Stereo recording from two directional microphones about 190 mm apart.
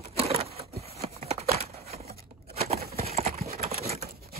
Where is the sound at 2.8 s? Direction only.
55° right (ahead or behind).